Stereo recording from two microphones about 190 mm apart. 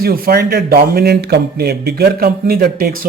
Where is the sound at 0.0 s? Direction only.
50° right (ahead or behind).